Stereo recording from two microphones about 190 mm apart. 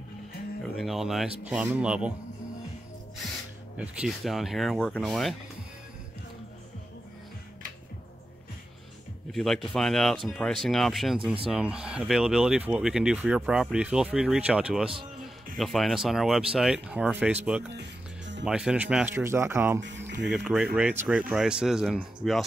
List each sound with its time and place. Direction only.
0.7 s speech: centre (ahead or behind)
3.7 s speech: 5° right (ahead or behind)
9.3 s speech: centre (ahead or behind)
17.7 s music: 70° right (ahead or behind)
18.4 s speech: 5° right (ahead or behind)